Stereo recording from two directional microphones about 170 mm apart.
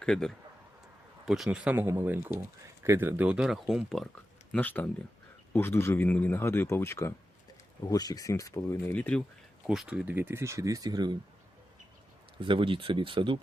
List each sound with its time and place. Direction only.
0.0 s speech: 5° left (ahead or behind)
9.6 s speech: 5° right (ahead or behind); by 11.2 s 25° right (ahead or behind)
12.4 s speech: 30° right (ahead or behind)